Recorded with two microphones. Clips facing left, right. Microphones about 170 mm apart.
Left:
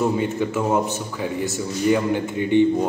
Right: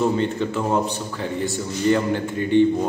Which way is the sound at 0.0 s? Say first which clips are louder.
Even; 5° left (ahead or behind).